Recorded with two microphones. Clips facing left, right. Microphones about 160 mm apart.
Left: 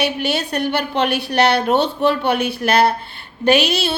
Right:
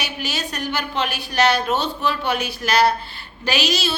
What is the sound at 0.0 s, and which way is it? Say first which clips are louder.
A woman's voice: left 8 dB; 60° left (ahead or behind).